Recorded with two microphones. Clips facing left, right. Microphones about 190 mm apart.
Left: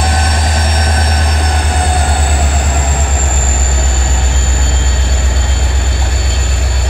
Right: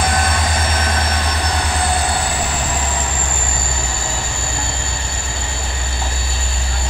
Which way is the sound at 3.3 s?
60° left (ahead or behind).